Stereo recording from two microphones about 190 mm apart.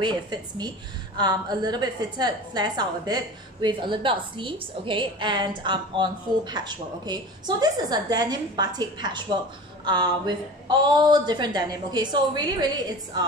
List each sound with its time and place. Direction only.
0.0 s a woman's voice: 25° right (ahead or behind)